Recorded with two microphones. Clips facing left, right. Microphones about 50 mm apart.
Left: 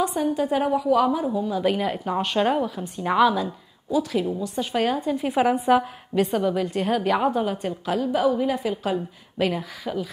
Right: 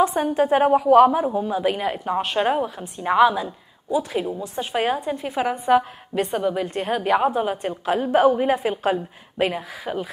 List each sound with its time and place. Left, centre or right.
0.2 s a woman's voice: right
1.6 s a woman's voice: centre
3.9 s a woman's voice: right
5.1 s a woman's voice: centre
7.6 s a woman's voice: right
8.1 s a woman's voice: right
8.9 s a woman's voice: right